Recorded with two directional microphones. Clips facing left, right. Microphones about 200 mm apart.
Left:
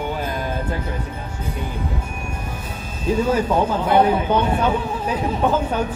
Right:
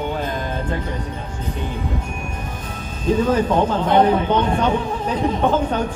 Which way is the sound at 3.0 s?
10° left (ahead or behind).